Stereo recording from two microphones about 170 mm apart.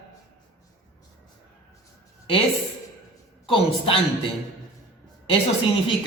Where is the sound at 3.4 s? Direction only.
30° left (ahead or behind).